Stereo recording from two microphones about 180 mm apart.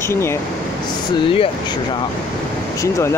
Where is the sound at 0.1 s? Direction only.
15° left (ahead or behind).